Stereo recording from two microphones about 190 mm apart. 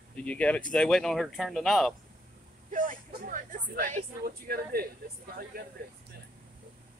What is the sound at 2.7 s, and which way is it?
Speech, 45° right (ahead or behind).